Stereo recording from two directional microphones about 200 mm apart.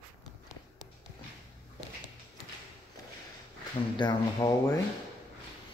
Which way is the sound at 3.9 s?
20° left (ahead or behind).